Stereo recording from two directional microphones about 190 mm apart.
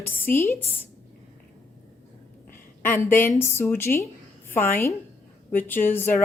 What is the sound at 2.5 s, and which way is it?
A woman's voice, 10° left (ahead or behind).